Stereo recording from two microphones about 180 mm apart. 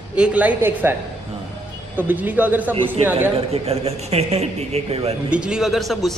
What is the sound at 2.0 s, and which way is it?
Speech, 10° right (ahead or behind).